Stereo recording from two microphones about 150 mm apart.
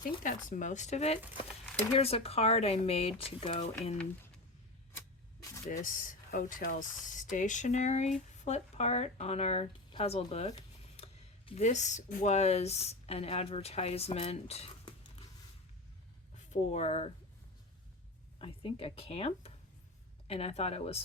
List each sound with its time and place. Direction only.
0.0 s speech: 65° left (ahead or behind); by 3.9 s 45° left (ahead or behind)
4.9 s a sound: 15° left (ahead or behind)
5.8 s speech: 65° left (ahead or behind); by 14.9 s 45° left (ahead or behind)
16.3 s speech: 50° left (ahead or behind)
18.3 s speech: 40° left (ahead or behind)